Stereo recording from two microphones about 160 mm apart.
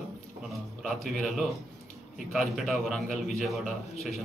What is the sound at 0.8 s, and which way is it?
A man's voice, centre (ahead or behind).